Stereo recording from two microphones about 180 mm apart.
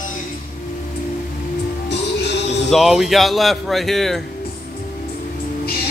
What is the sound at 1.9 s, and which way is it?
Music, 70° left (ahead or behind).